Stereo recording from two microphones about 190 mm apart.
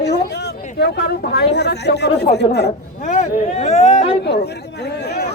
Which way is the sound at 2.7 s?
35° left (ahead or behind).